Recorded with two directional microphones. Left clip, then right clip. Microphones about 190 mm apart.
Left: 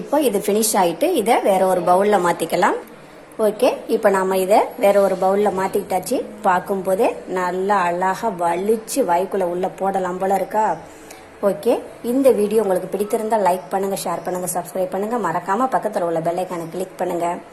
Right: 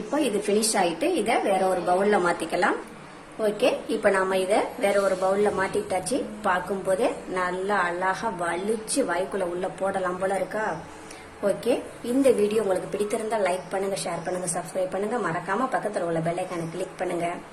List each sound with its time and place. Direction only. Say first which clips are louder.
0.2 s a woman's voice: left 5 dB; 20° left (ahead or behind)
11.4 s a woman's voice: left 6 dB; 15° left (ahead or behind)